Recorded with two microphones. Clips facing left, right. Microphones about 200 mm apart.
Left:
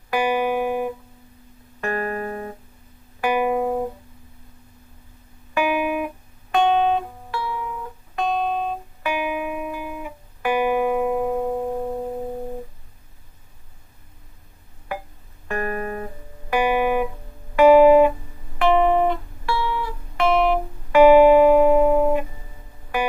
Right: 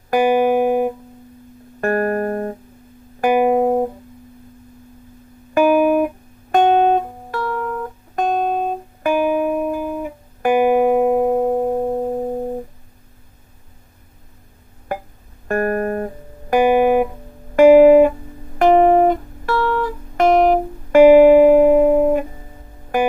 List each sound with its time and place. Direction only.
0.1 s music: 45° right (ahead or behind)
5.5 s guitar: 45° right (ahead or behind)
15.4 s music: 45° right (ahead or behind)